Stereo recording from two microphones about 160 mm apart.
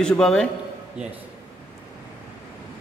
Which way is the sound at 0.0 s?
5° left (ahead or behind).